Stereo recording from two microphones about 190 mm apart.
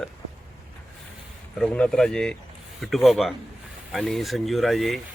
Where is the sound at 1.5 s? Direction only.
5° left (ahead or behind).